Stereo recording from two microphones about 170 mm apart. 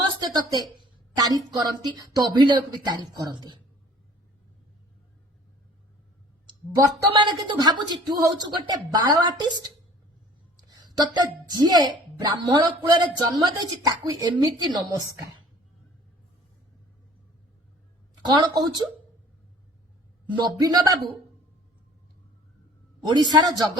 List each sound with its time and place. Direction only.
0.2 s a sound: 25° right (ahead or behind)
1.4 s speech: 25° right (ahead or behind)
6.5 s a woman's voice: 25° right (ahead or behind)
18.3 s speech: 25° right (ahead or behind)
20.4 s speech: 20° right (ahead or behind)
23.0 s speech: 25° right (ahead or behind)